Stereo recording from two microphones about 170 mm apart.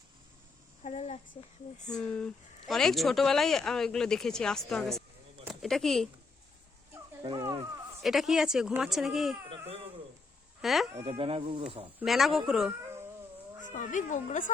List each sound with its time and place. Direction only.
0.8 s a sound: 40° left (ahead or behind)
1.9 s speech: 5° left (ahead or behind)
6.9 s a sound: 25° right (ahead or behind)
8.0 s speech: centre (ahead or behind)
9.5 s baby cry: 35° right (ahead or behind)
10.6 s speech: centre (ahead or behind)
11.0 s speech: 35° right (ahead or behind)
11.9 s speech: centre (ahead or behind)
13.7 s speech: 50° left (ahead or behind)